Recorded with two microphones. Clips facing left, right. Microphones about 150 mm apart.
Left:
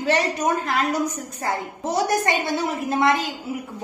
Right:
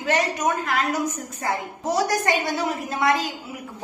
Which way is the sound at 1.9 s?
25° left (ahead or behind).